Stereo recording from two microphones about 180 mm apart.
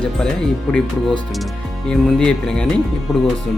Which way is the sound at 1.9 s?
5° left (ahead or behind).